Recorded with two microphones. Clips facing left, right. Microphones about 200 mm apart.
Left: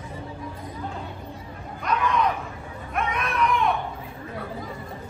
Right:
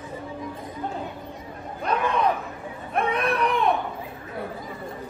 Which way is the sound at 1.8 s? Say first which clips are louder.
Right 1 dB; 30° right (ahead or behind).